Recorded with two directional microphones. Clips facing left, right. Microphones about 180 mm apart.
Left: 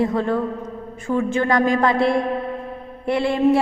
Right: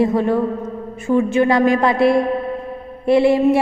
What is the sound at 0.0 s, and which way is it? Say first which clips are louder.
A woman's voice: right 4 dB; 20° right (ahead or behind).